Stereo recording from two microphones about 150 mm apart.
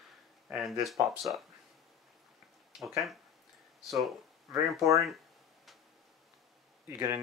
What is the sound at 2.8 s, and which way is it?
Speech, centre (ahead or behind).